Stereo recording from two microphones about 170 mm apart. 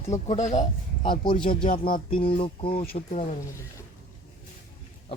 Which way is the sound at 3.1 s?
45° left (ahead or behind).